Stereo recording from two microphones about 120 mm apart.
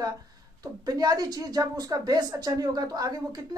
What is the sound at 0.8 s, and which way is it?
A woman's voice, 30° right (ahead or behind).